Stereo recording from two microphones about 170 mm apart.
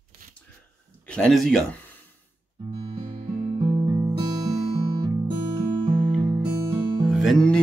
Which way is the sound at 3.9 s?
15° right (ahead or behind).